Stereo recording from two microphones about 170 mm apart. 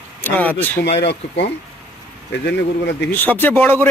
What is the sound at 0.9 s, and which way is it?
Speech, 90° left.